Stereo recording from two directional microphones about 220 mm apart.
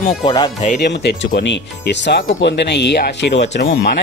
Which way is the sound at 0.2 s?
20° left (ahead or behind).